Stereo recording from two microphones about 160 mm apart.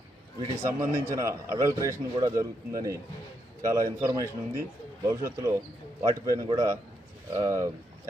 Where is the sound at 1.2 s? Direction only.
20° right (ahead or behind).